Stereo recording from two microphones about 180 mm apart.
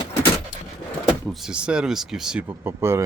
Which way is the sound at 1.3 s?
5° right (ahead or behind).